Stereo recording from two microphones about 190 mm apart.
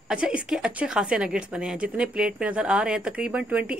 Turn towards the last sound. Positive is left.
turn(degrees=-5)  # may be behind; listen again after turning